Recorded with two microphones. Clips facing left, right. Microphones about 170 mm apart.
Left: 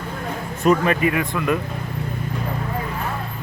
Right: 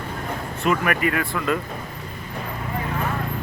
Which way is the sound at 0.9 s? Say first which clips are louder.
Left 3 dB; 20° left (ahead or behind).